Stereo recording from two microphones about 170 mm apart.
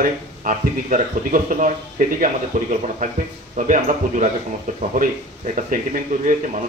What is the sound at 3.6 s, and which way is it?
Speech, 45° right (ahead or behind).